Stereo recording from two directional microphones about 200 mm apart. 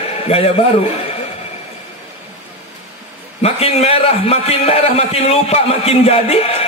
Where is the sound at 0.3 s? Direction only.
30° left (ahead or behind).